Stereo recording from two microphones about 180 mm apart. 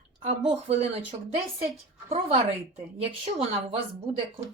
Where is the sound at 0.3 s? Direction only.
35° right (ahead or behind).